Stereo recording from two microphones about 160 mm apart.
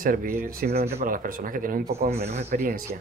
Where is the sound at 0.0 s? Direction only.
65° right (ahead or behind).